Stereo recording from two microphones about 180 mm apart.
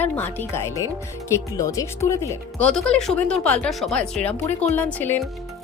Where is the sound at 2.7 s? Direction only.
5° left (ahead or behind).